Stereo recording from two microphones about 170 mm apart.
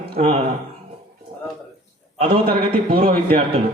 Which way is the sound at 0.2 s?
35° right (ahead or behind).